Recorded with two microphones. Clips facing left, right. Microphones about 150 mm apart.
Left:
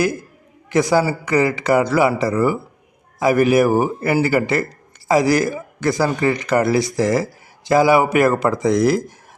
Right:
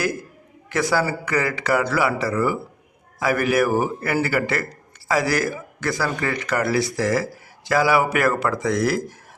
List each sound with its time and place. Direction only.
0.7 s speech: 15° left (ahead or behind)